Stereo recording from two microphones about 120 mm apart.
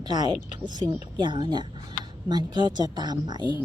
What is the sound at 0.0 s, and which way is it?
A woman's voice, 35° right (ahead or behind).